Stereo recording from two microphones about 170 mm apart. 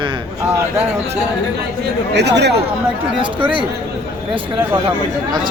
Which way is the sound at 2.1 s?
85° right.